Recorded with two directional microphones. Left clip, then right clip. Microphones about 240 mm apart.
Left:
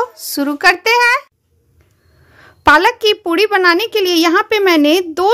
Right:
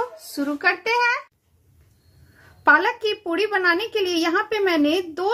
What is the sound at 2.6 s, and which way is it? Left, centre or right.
A woman's voice, left.